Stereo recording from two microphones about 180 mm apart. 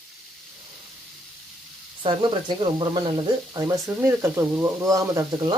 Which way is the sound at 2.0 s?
30° right (ahead or behind).